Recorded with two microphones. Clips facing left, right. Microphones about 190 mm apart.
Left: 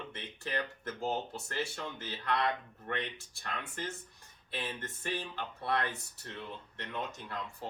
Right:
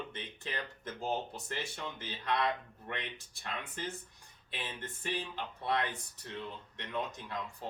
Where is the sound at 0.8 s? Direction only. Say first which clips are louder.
Left 1 dB; 20° right (ahead or behind).